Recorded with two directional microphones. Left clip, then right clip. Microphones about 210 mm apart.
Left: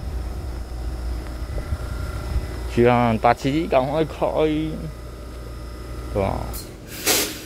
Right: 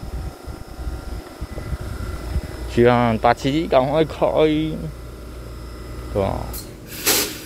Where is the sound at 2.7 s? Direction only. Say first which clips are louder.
Right 2 dB; 5° right (ahead or behind).